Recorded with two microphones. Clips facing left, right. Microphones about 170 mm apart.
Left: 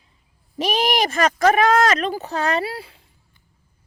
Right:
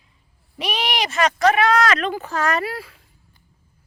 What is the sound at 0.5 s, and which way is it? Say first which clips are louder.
Speech: left 4 dB; 45° left (ahead or behind).